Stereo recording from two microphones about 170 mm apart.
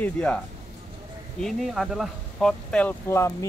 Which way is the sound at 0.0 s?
5° left (ahead or behind).